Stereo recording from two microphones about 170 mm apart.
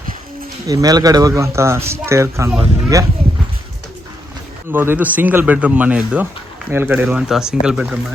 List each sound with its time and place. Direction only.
0.7 s speech: 20° right (ahead or behind)
4.7 s speech: 10° right (ahead or behind)